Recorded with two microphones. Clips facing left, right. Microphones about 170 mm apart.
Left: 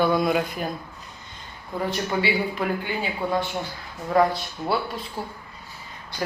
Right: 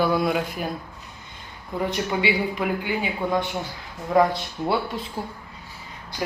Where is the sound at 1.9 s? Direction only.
15° right (ahead or behind).